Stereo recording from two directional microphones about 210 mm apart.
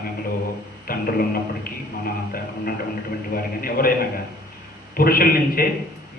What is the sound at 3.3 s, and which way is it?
Speech, 45° left (ahead or behind).